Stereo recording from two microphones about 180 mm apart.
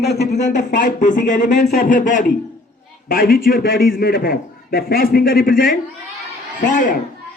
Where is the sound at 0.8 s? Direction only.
45° left (ahead or behind).